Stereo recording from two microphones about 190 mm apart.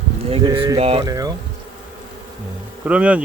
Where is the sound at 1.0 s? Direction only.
20° right (ahead or behind).